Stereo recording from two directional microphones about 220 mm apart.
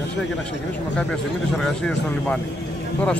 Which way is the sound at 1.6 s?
5° left (ahead or behind).